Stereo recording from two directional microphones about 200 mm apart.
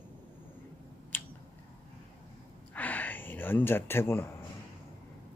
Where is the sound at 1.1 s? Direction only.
10° left (ahead or behind).